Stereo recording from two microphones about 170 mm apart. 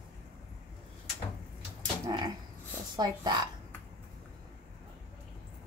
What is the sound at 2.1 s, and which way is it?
Dog, 25° right (ahead or behind).